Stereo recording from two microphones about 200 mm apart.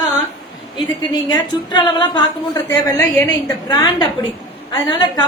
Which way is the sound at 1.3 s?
20° left (ahead or behind).